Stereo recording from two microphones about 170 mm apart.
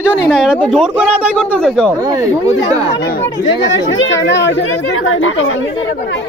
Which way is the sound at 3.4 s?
90° left.